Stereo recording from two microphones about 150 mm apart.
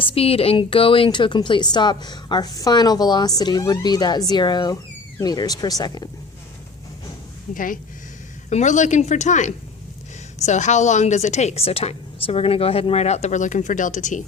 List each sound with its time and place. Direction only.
0.0 s a woman's voice: 40° left (ahead or behind)
7.5 s speech: 65° left (ahead or behind)
8.4 s a woman's voice: 50° left (ahead or behind)